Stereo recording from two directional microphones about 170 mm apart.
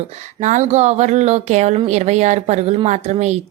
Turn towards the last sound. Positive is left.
turn(degrees=-40)  # may be behind; listen again after turning